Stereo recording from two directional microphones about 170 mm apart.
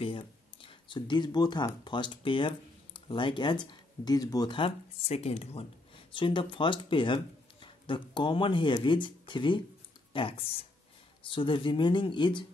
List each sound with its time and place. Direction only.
0.0 s speech: 30° left (ahead or behind)